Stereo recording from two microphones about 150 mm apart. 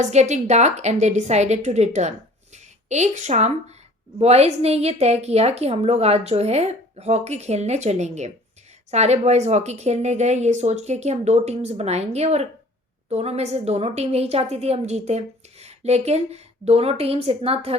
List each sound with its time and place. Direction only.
0.0 s a woman's voice: 50° right (ahead or behind)